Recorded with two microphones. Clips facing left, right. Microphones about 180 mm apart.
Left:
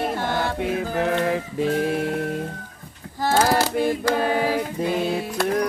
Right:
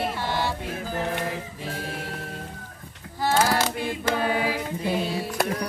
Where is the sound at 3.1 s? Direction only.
45° left (ahead or behind).